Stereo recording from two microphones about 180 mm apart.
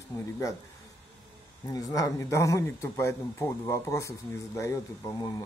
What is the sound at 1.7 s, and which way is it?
Speech, 20° left (ahead or behind).